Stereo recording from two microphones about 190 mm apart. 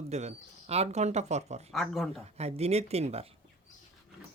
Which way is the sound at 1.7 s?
Centre (ahead or behind).